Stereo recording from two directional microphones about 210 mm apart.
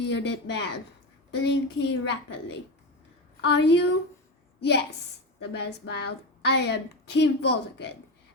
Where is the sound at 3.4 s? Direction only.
55° left (ahead or behind).